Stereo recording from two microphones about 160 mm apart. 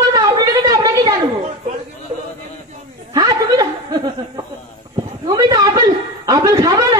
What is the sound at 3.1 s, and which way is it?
Chuckle, 20° right (ahead or behind).